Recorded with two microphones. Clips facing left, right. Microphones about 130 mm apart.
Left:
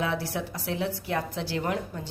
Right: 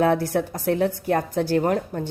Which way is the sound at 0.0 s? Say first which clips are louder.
Right 9 dB; 50° right (ahead or behind).